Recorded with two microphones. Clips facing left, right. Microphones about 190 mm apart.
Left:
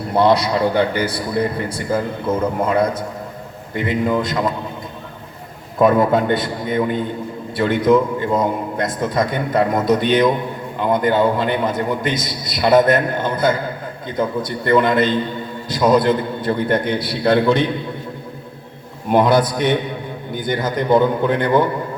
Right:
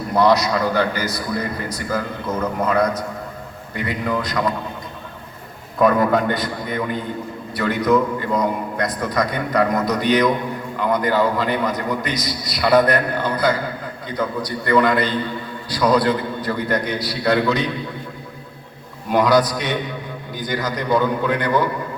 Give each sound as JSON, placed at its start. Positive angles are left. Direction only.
{"t": 0.1, "sound": "a man's voice", "side_deg": 25}
{"t": 5.8, "sound": "a man's voice", "side_deg": 25}
{"t": 19.1, "sound": "a man's voice", "side_deg": 25}